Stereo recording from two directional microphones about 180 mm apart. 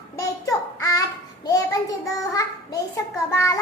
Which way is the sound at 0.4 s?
15° left (ahead or behind).